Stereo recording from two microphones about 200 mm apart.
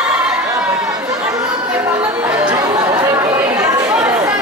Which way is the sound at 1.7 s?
10° right (ahead or behind).